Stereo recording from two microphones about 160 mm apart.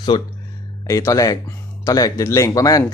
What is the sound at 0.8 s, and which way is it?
Speech, 20° left (ahead or behind).